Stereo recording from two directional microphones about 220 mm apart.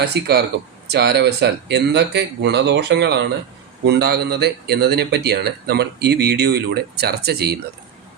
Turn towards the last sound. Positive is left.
turn(degrees=-45)  # may be behind; listen again after turning